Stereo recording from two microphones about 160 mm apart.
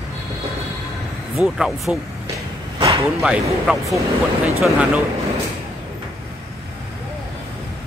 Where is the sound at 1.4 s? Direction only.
5° right (ahead or behind).